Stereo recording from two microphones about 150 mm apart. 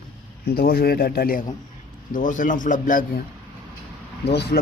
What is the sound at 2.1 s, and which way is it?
Speech, 60° left (ahead or behind).